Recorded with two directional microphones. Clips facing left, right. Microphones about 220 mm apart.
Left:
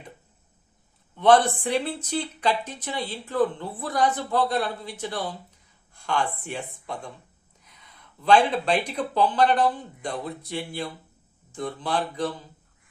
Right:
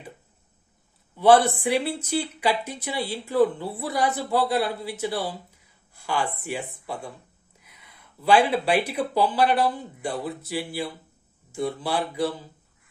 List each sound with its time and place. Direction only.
1.1 s speech: 5° right (ahead or behind)